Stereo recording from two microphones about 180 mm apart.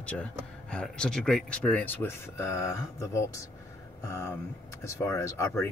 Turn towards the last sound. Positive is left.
turn(degrees=15)  # may be behind; listen again after turning